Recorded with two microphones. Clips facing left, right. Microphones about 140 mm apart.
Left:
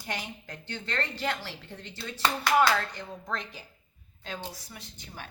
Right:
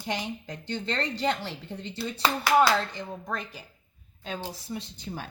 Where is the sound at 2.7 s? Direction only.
20° right (ahead or behind).